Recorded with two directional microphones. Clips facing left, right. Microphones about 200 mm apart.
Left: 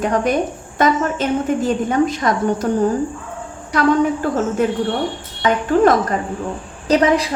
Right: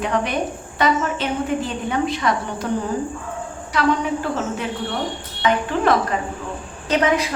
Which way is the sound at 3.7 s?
45° left (ahead or behind).